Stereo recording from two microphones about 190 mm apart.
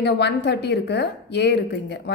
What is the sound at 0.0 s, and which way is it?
A woman's voice, 60° left (ahead or behind).